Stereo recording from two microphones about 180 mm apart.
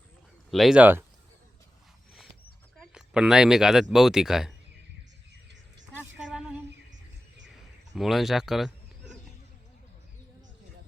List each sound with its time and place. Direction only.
0.5 s speech: centre (ahead or behind)
2.7 s speech: centre (ahead or behind)
7.9 s speech: centre (ahead or behind)